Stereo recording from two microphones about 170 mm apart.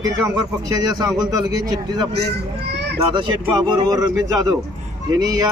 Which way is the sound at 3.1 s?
30° right (ahead or behind).